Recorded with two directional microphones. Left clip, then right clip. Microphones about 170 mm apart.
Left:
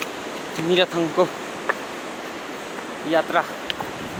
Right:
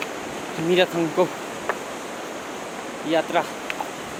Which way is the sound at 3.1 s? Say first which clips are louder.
Left 2 dB; 15° right (ahead or behind).